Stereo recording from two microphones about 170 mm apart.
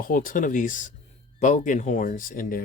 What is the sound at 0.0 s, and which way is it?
Speech, 55° left (ahead or behind).